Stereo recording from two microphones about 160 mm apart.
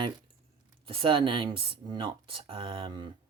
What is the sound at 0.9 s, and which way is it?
Speech, 35° right (ahead or behind).